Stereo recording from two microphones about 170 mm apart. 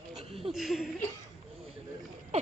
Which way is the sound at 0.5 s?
Centre (ahead or behind).